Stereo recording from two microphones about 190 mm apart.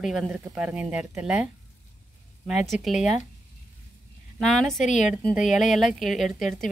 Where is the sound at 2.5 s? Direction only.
Centre (ahead or behind).